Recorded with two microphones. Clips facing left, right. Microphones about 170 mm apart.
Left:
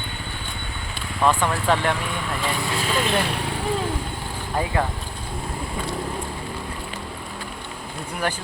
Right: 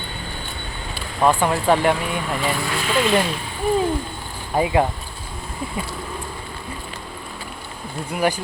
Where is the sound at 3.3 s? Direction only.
75° left (ahead or behind).